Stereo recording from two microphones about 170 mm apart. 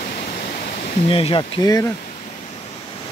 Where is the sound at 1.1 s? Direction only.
30° left (ahead or behind).